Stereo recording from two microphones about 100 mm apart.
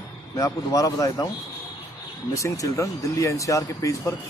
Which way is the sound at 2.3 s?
30° left (ahead or behind).